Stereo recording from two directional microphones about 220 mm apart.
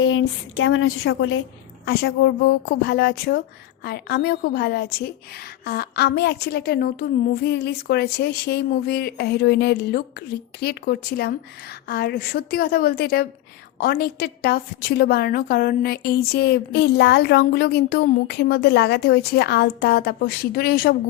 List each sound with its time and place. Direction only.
0.0 s a woman's voice: 60° left (ahead or behind)
1.8 s a woman's voice: 45° left (ahead or behind)